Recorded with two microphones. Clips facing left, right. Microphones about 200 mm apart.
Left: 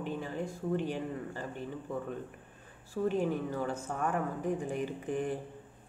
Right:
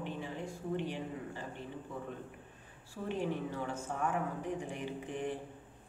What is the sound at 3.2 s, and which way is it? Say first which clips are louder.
A woman's voice: left 4 dB; 40° left (ahead or behind).